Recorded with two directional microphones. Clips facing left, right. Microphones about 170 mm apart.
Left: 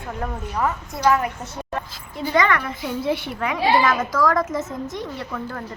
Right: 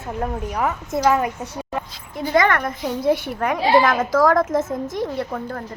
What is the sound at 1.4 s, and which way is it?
Speech, 10° right (ahead or behind).